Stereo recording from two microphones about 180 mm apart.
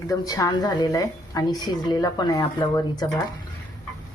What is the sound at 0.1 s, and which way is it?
A woman's voice, 20° left (ahead or behind).